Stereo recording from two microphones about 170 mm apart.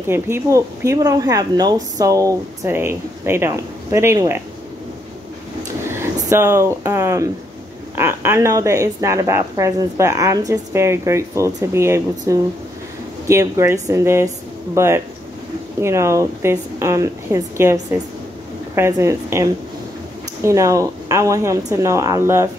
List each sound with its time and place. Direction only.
0.1 s speech: 15° right (ahead or behind)
5.9 s speech: 15° right (ahead or behind)
18.8 s speech: 15° right (ahead or behind)